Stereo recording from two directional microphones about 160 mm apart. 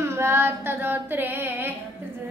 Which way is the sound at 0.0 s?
15° right (ahead or behind).